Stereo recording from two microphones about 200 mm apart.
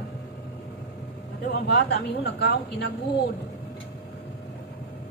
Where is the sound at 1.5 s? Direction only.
60° left (ahead or behind).